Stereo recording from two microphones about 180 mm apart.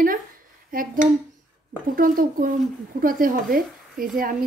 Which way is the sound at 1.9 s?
50° right (ahead or behind).